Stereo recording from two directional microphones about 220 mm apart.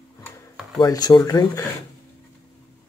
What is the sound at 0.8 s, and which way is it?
Speech, 15° left (ahead or behind).